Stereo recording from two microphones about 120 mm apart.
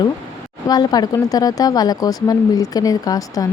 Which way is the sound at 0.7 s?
35° left (ahead or behind).